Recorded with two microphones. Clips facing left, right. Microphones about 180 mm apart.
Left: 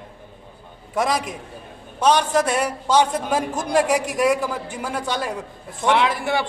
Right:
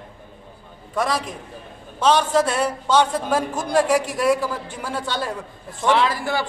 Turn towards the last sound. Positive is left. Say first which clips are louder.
# even
turn(degrees=20)  # may be behind; listen again after turning